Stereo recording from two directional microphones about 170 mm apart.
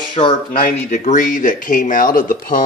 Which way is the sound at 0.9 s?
45° left (ahead or behind).